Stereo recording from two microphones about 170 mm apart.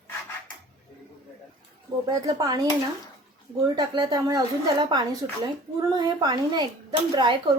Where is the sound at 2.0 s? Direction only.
20° right (ahead or behind).